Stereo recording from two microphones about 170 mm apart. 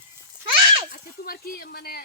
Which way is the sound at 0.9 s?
60° left (ahead or behind).